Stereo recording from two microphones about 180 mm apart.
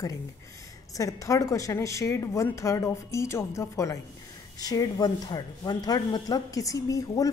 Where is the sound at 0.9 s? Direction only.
20° left (ahead or behind).